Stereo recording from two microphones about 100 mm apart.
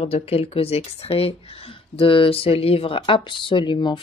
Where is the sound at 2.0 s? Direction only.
60° left (ahead or behind).